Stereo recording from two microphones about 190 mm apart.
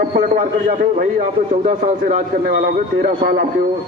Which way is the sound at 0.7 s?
45° right (ahead or behind).